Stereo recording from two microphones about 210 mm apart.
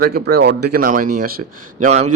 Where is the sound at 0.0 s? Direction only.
50° right (ahead or behind).